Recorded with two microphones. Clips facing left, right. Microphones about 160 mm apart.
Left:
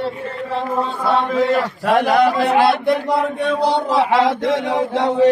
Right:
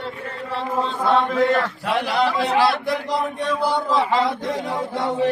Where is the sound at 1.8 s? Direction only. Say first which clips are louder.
Left 9 dB; 50° left (ahead or behind); by 5.3 s 80° left.